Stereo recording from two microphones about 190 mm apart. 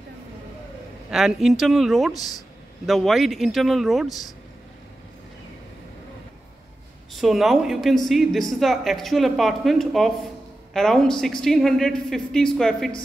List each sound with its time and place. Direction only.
1.1 s speech: centre (ahead or behind)
7.2 s speech: centre (ahead or behind)